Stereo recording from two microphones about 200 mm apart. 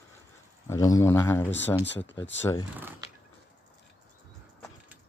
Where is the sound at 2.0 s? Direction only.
65° left (ahead or behind).